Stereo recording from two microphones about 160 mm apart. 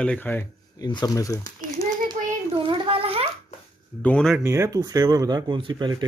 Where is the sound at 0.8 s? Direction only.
25° left (ahead or behind).